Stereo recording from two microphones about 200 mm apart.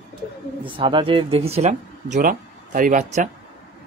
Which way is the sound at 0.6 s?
25° right (ahead or behind).